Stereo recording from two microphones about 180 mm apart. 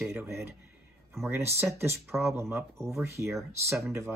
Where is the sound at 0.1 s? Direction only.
15° right (ahead or behind).